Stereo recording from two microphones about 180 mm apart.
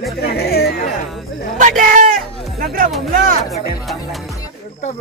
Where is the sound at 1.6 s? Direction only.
45° right (ahead or behind).